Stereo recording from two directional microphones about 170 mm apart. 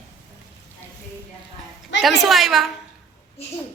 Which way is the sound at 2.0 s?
Centre (ahead or behind).